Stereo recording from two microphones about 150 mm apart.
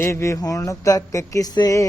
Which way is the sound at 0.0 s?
20° left (ahead or behind).